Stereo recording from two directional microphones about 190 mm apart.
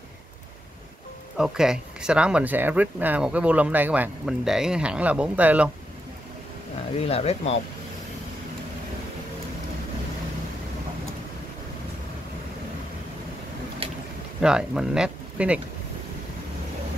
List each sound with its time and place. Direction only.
1.4 s speech: 5° right (ahead or behind)
7.0 s speech: 30° left (ahead or behind)
14.4 s speech: 5° right (ahead or behind)